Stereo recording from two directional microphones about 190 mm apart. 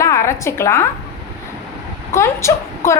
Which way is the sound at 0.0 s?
15° left (ahead or behind).